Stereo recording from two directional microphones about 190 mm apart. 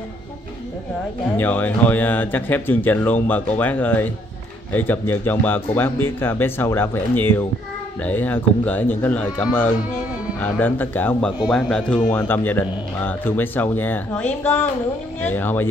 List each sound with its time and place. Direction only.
1.3 s a man's voice: 10° left (ahead or behind)